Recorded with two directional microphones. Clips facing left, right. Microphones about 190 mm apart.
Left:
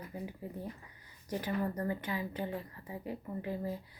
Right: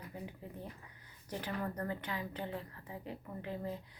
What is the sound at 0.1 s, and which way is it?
A woman's voice, 10° left (ahead or behind).